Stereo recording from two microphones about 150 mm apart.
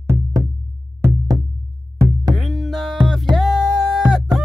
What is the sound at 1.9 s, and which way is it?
Music, 20° right (ahead or behind).